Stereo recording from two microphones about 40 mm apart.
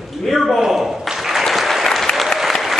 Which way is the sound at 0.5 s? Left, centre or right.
Centre.